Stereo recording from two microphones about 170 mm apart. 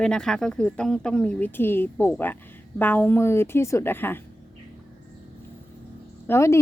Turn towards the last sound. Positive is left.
turn(degrees=15)  # may be behind; listen again after turning